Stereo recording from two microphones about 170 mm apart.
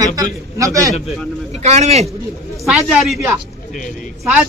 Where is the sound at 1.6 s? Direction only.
40° right (ahead or behind).